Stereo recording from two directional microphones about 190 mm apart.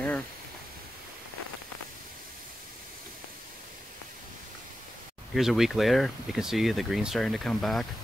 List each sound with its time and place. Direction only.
5.3 s speech: centre (ahead or behind)